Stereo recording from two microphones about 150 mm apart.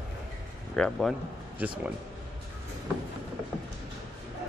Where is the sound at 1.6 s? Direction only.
10° right (ahead or behind).